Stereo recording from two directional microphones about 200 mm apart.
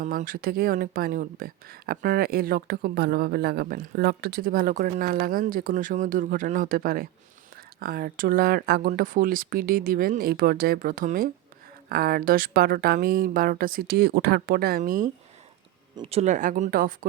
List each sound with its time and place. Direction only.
0.0 s speech: 40° right (ahead or behind)
16.0 s speech: 30° right (ahead or behind)